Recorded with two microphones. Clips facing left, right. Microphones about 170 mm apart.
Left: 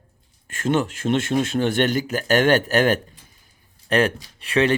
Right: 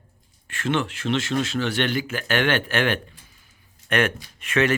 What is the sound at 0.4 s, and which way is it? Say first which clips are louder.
Speech: left 3 dB; 45° left (ahead or behind).